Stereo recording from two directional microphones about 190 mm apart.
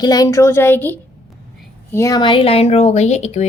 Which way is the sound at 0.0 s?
20° left (ahead or behind).